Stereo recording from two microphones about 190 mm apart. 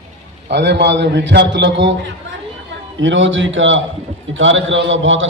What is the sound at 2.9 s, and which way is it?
A man's voice, 80° right.